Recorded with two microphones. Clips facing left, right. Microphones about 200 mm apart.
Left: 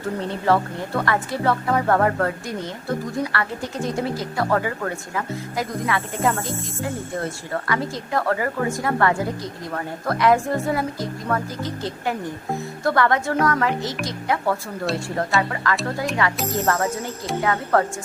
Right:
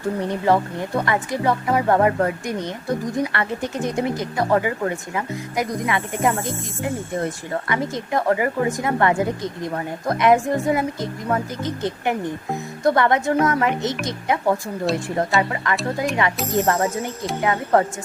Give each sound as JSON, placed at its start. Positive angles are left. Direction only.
{"t": 0.2, "sound": "speech", "side_deg": -15}